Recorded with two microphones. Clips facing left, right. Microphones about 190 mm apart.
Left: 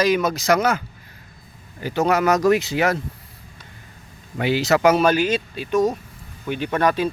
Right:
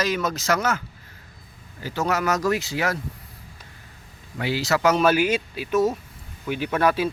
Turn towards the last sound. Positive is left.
turn(degrees=-5)  # may be behind; listen again after turning